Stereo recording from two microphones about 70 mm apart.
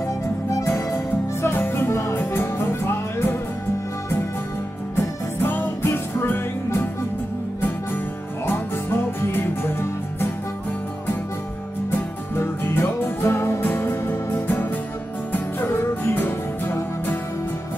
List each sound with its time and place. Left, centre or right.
0.0 s music: left
4.9 s music: left
8.5 s music: left
12.4 s music: left